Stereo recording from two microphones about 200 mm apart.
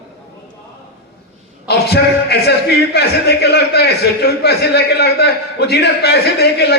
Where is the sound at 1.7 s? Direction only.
55° left (ahead or behind).